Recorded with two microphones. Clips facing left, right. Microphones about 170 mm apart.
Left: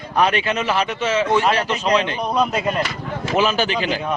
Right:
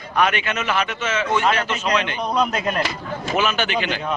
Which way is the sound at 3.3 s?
30° left (ahead or behind).